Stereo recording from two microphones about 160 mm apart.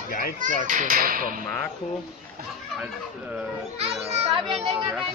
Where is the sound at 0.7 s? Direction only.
55° right (ahead or behind).